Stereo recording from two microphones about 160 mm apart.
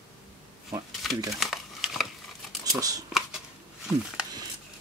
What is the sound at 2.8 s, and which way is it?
Speech, 20° right (ahead or behind).